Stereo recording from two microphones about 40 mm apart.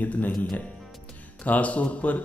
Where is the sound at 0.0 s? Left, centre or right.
Left.